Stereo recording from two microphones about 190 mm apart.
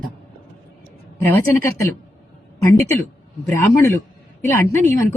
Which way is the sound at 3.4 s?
15° left (ahead or behind).